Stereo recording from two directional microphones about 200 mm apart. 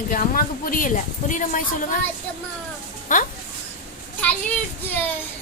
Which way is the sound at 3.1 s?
40° left (ahead or behind).